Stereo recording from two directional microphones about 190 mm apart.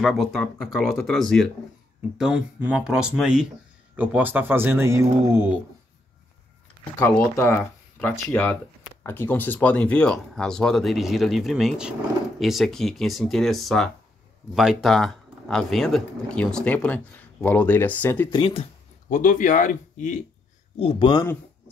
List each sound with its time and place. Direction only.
0.0 s speech: centre (ahead or behind)
6.8 s speech: 10° left (ahead or behind)
18.3 s speech: 30° left (ahead or behind)
19.0 s speech: 45° left (ahead or behind)
20.8 s speech: 30° left (ahead or behind)